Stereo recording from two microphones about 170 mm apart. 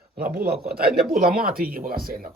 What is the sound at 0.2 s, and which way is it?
Speech, 60° right (ahead or behind).